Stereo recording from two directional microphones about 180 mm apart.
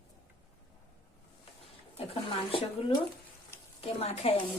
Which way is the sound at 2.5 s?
25° left (ahead or behind).